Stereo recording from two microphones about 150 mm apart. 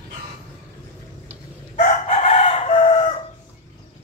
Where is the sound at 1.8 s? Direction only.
50° left (ahead or behind).